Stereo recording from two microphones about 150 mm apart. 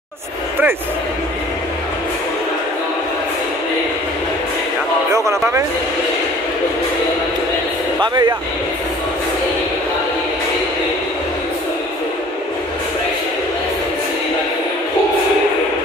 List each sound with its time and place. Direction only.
5.1 s speech: 20° right (ahead or behind)
8.0 s speech: 30° right (ahead or behind)